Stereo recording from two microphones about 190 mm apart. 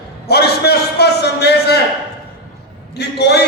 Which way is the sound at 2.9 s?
60° left (ahead or behind).